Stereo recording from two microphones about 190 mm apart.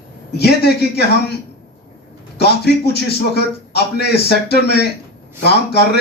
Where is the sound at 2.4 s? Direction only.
60° left (ahead or behind).